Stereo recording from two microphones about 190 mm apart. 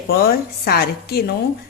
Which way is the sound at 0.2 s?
55° left (ahead or behind).